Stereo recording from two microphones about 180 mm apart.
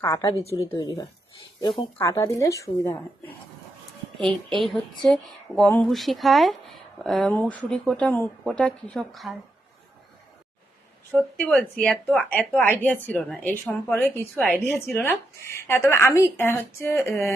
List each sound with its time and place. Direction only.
0.0 s a woman's voice: 20° left (ahead or behind)
2.0 s a woman's voice: 15° left (ahead or behind)
4.2 s speech: centre (ahead or behind)
11.1 s a woman's voice: 5° left (ahead or behind)